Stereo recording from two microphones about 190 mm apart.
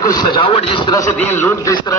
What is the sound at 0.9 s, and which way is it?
A man's voice, 15° left (ahead or behind).